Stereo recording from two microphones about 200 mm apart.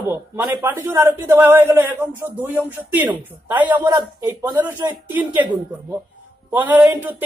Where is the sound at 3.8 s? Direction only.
20° right (ahead or behind).